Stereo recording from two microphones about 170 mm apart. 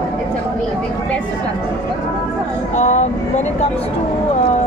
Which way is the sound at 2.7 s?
40° left (ahead or behind).